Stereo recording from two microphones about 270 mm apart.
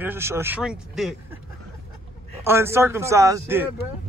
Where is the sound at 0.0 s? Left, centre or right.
Centre.